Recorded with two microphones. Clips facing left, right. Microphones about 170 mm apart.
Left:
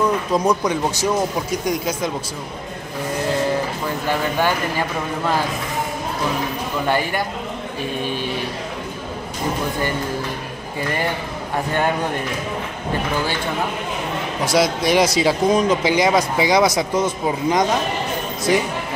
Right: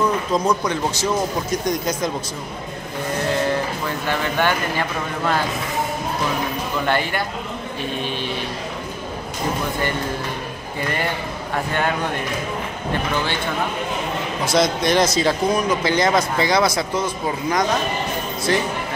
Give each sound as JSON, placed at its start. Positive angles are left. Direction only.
{"t": 0.3, "sound": "speech", "side_deg": 15}
{"t": 4.1, "sound": "speech", "side_deg": 10}
{"t": 6.9, "sound": "speech", "side_deg": 10}
{"t": 8.0, "sound": "speech", "side_deg": 45}
{"t": 14.4, "sound": "speech", "side_deg": 10}
{"t": 15.5, "sound": "speech", "side_deg": 20}